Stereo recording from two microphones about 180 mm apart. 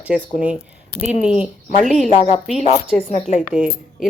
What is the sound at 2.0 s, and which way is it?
A woman's voice, 35° left (ahead or behind).